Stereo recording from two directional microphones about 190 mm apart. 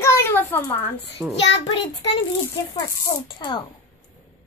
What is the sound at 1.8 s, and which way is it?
Speech, 65° left (ahead or behind).